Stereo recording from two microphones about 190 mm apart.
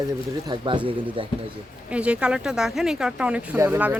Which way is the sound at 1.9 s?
5° right (ahead or behind).